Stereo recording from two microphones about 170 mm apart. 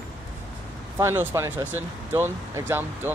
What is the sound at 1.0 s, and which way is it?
Speech, 15° right (ahead or behind).